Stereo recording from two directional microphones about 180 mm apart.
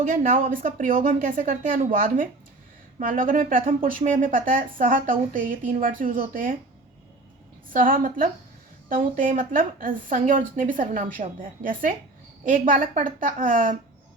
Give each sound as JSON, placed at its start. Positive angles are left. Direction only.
{"t": 0.1, "sound": "a woman's voice", "side_deg": -45}
{"t": 7.7, "sound": "a woman's voice", "side_deg": -50}